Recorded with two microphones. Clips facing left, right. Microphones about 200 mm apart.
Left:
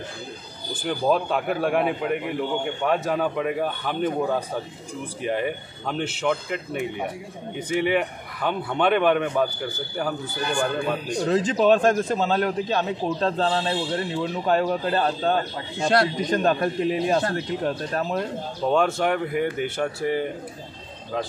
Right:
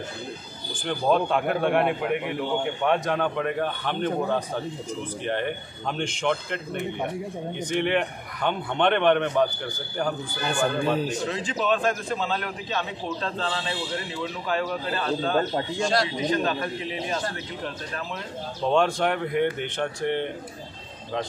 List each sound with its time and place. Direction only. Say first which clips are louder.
0.8 s a man's voice: even; 5° left (ahead or behind)
11.1 s a man's voice: left 7 dB; 40° left (ahead or behind)
15.9 s a man's voice: left 5 dB; 50° left (ahead or behind)
18.7 s a man's voice: left 1 dB; 5° left (ahead or behind)